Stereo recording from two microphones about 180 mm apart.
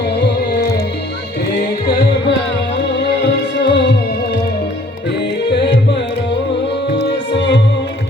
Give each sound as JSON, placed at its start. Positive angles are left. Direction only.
{"t": 0.2, "sound": "music", "side_deg": 65}
{"t": 3.6, "sound": "music", "side_deg": 75}
{"t": 5.5, "sound": "music", "side_deg": 70}
{"t": 7.0, "sound": "music", "side_deg": 75}